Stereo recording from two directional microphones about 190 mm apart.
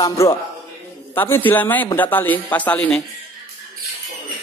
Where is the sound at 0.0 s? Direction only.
15° left (ahead or behind).